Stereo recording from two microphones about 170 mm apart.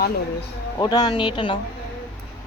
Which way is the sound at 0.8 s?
25° left (ahead or behind).